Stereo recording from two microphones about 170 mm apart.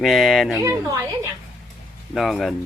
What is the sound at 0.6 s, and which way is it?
Speech, 15° right (ahead or behind).